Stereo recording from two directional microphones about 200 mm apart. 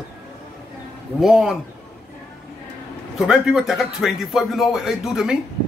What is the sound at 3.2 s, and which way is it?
Speech, centre (ahead or behind).